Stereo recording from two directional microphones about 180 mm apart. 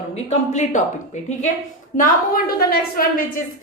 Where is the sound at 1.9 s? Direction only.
55° left (ahead or behind).